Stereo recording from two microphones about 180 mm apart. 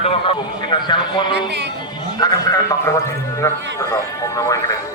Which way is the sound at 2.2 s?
20° left (ahead or behind).